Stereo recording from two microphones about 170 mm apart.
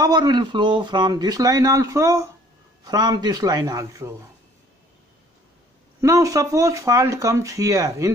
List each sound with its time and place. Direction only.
0.0 s speech: 25° right (ahead or behind)
5.9 s speech: 20° right (ahead or behind)